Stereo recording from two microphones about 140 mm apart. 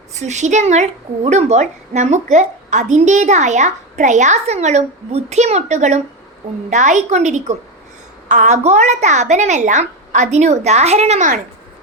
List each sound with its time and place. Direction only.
0.1 s a woman's voice: 55° right (ahead or behind)